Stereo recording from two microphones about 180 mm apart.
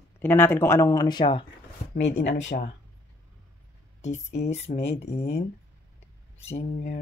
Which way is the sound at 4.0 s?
40° left (ahead or behind).